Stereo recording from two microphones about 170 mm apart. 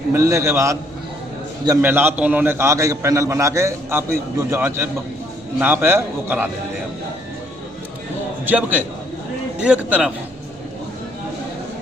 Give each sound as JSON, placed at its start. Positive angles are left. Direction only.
{"t": 0.1, "sound": "a man's voice", "side_deg": -15}
{"t": 8.4, "sound": "a man's voice", "side_deg": -10}